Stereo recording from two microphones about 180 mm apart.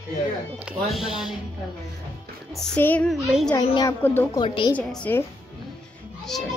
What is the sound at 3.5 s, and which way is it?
Speech, 25° left (ahead or behind).